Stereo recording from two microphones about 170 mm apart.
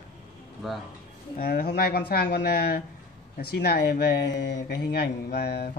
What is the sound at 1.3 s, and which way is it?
A man's voice, 60° left (ahead or behind).